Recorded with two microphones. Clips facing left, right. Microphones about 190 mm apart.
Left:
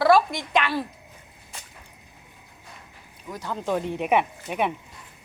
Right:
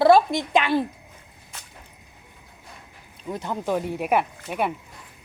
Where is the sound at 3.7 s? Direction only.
10° right (ahead or behind).